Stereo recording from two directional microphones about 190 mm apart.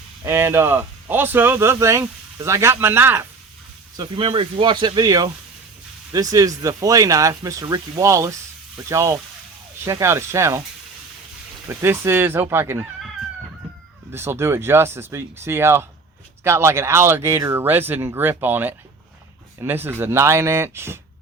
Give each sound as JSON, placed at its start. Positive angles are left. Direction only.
{"t": 0.3, "sound": "speech", "side_deg": -10}
{"t": 3.9, "sound": "speech", "side_deg": -25}
{"t": 11.7, "sound": "speech", "side_deg": -10}
{"t": 14.1, "sound": "speech", "side_deg": -15}